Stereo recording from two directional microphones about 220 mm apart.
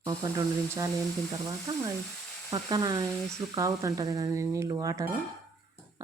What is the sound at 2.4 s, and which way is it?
Speech, 15° right (ahead or behind).